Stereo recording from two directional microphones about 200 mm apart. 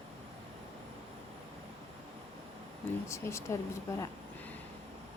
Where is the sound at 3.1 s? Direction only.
15° left (ahead or behind).